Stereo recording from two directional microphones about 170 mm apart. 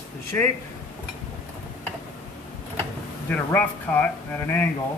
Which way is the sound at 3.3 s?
10° left (ahead or behind).